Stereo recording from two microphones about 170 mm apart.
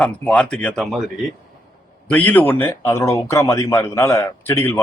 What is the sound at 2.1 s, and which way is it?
Speech, 10° left (ahead or behind).